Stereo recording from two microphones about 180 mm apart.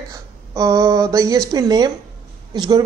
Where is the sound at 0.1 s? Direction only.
20° right (ahead or behind).